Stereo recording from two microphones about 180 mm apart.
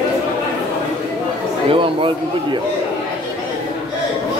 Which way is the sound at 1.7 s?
30° right (ahead or behind).